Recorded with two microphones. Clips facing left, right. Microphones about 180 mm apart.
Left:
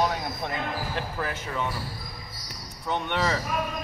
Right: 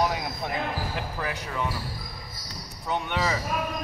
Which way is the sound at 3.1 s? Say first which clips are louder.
Left 2 dB; 5° right (ahead or behind).